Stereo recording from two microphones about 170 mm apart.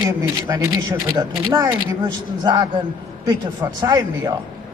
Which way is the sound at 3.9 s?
20° right (ahead or behind).